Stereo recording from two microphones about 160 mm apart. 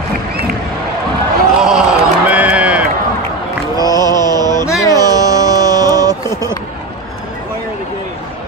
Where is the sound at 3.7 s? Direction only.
25° right (ahead or behind).